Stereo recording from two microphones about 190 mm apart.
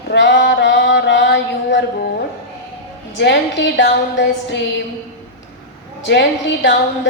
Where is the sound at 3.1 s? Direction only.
65° left (ahead or behind).